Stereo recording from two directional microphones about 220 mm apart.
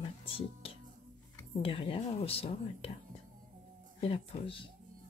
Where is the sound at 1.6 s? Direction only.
25° left (ahead or behind).